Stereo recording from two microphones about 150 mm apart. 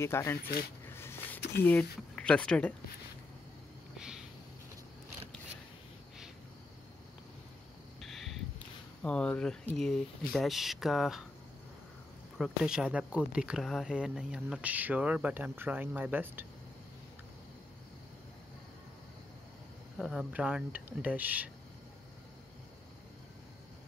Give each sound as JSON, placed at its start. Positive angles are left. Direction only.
{"t": 0.0, "sound": "speech", "side_deg": 15}
{"t": 0.8, "sound": "a sound", "side_deg": 15}
{"t": 1.6, "sound": "speech", "side_deg": 10}
{"t": 8.0, "sound": "a sound", "side_deg": 0}
{"t": 10.3, "sound": "speech", "side_deg": 0}
{"t": 12.4, "sound": "speech", "side_deg": -5}
{"t": 20.0, "sound": "speech", "side_deg": -5}